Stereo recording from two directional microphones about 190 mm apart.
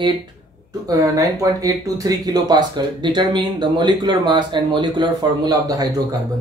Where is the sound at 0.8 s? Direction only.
20° right (ahead or behind).